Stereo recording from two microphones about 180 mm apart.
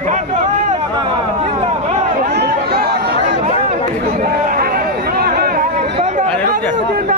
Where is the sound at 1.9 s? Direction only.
45° right (ahead or behind).